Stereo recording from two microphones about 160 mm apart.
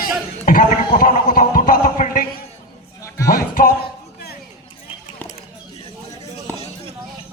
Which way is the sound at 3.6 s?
60° left (ahead or behind).